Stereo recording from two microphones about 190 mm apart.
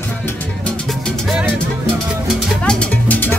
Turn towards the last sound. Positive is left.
turn(degrees=10)  # may be behind; listen again after turning